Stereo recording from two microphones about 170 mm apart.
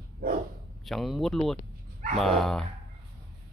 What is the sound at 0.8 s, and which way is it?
Speech, centre (ahead or behind).